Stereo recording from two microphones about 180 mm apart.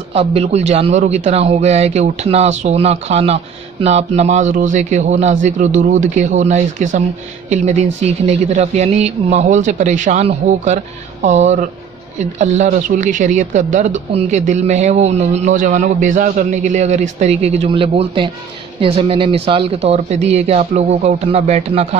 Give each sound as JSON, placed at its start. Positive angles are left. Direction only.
{"t": 0.1, "sound": "speech", "side_deg": -35}